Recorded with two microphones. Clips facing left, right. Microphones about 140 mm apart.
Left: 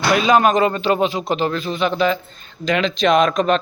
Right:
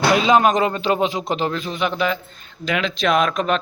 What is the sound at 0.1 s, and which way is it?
A man's voice, 20° right (ahead or behind).